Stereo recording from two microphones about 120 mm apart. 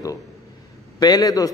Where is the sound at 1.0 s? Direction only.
35° left (ahead or behind).